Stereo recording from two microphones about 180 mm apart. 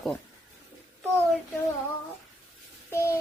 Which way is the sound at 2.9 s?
15° left (ahead or behind).